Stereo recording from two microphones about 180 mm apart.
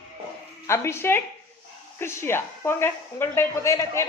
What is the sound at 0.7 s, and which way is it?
A woman's voice, 15° left (ahead or behind).